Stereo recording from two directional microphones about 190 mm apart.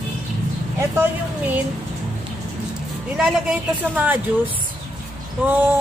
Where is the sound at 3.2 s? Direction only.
5° right (ahead or behind).